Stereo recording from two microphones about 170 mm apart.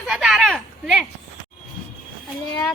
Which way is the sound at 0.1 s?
Centre (ahead or behind).